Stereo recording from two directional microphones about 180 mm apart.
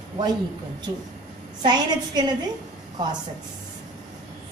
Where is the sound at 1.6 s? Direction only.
25° right (ahead or behind).